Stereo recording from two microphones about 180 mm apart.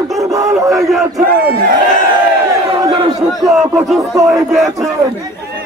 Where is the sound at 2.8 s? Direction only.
20° right (ahead or behind).